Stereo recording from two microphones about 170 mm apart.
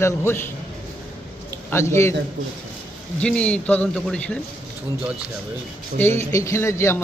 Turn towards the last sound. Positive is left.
turn(degrees=15)  # may be behind; listen again after turning